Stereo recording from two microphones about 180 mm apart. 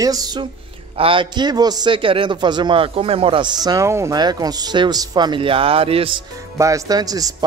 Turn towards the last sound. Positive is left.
turn(degrees=-20)  # may be behind; listen again after turning